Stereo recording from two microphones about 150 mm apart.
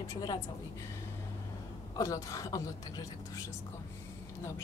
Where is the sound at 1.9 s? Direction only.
20° left (ahead or behind).